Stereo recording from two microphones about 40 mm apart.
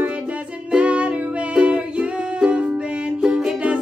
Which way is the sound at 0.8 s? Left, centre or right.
Right.